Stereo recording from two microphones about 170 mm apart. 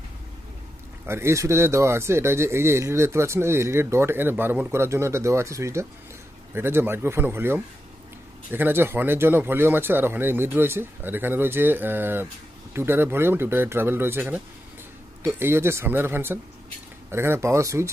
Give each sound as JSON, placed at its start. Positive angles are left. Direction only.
{"t": 1.0, "sound": "speech", "side_deg": -15}